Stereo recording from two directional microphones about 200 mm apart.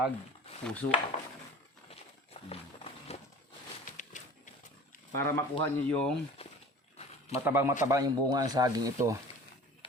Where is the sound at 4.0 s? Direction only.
40° left (ahead or behind).